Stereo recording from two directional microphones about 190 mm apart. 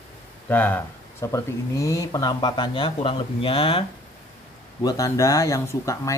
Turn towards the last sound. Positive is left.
turn(degrees=15)  # may be behind; listen again after turning